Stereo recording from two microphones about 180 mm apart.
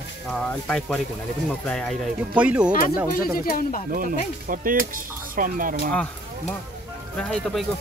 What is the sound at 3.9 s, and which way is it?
Speech, 50° right (ahead or behind).